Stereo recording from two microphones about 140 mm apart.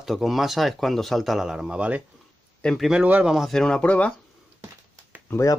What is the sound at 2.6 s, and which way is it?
Speech, centre (ahead or behind).